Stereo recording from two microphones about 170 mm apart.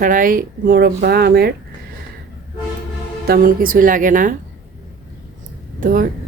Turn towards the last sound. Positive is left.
turn(degrees=-55)  # may be behind; listen again after turning